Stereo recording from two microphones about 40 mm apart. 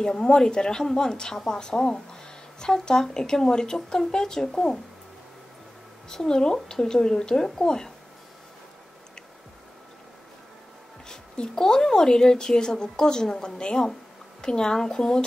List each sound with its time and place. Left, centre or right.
0.0 s a woman's voice: centre
6.0 s a woman's voice: centre
11.1 s a sound: left
11.5 s a woman's voice: centre